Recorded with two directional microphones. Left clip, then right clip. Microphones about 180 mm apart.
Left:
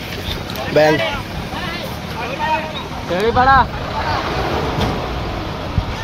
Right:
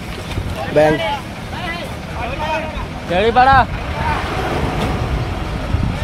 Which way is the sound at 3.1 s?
70° right (ahead or behind).